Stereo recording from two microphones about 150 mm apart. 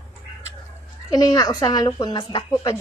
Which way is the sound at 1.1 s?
25° left (ahead or behind).